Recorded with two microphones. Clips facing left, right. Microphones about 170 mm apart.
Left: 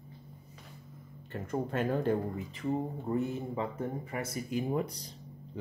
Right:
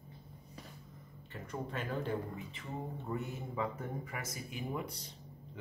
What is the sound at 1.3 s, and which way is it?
Speech, 50° left (ahead or behind).